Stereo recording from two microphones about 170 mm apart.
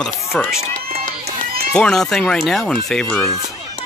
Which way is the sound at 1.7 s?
5° left (ahead or behind).